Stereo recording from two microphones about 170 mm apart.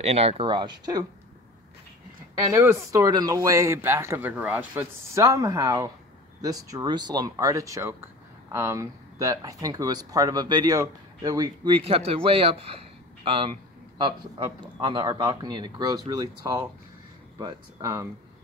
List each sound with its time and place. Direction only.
0.0 s speech: 40° right (ahead or behind)
2.4 s speech: 15° right (ahead or behind)